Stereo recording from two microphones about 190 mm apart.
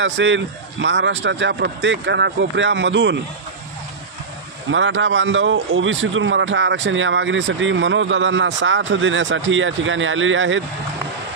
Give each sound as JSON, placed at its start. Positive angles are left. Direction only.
{"t": 0.0, "sound": "a man's voice", "side_deg": -75}
{"t": 4.6, "sound": "a man's voice", "side_deg": -85}